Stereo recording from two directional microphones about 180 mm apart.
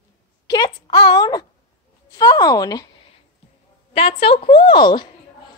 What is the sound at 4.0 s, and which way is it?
A woman's voice, 30° left (ahead or behind).